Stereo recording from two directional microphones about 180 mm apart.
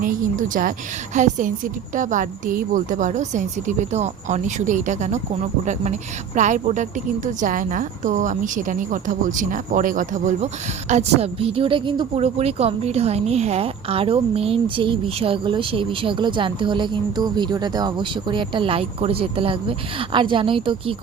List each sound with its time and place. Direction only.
0.0 s a woman's voice: 50° right (ahead or behind); by 20.9 s 30° right (ahead or behind)